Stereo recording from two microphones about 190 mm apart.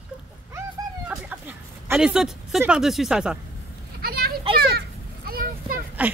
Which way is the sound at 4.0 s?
55° right (ahead or behind).